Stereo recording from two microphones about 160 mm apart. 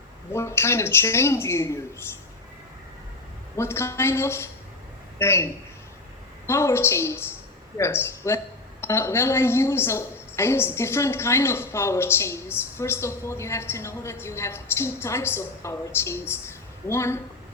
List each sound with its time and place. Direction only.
0.3 s a woman's voice: 15° left (ahead or behind)
3.6 s a woman's voice: 15° left (ahead or behind)
6.5 s a woman's voice: 15° left (ahead or behind)